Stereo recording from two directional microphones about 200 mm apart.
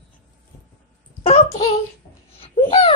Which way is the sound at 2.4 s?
30° left (ahead or behind).